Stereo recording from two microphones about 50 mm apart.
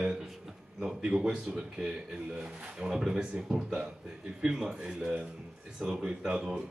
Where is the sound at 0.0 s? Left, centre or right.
Centre.